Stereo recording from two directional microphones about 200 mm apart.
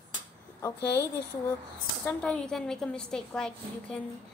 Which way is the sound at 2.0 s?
5° left (ahead or behind).